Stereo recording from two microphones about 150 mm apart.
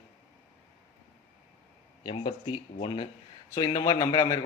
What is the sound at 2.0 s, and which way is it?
Speech, 30° left (ahead or behind).